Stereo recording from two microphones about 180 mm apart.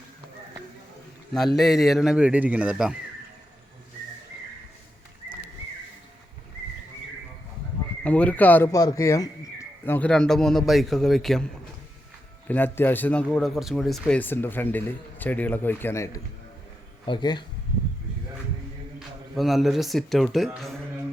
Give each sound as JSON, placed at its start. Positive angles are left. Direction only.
{"t": 1.5, "sound": "speech", "side_deg": 0}
{"t": 8.0, "sound": "a man's voice", "side_deg": 5}
{"t": 12.5, "sound": "speech", "side_deg": 10}
{"t": 18.9, "sound": "speech", "side_deg": 0}